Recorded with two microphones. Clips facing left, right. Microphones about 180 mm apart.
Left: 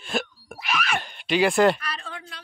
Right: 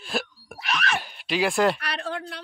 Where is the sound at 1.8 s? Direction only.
70° right (ahead or behind).